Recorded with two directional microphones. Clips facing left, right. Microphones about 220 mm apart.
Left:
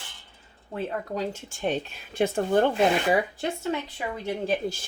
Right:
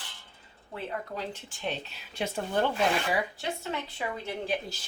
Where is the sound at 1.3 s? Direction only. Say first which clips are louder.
Left 7 dB; 45° left (ahead or behind).